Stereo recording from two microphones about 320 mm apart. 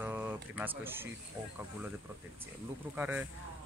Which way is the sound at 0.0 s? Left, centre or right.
Centre.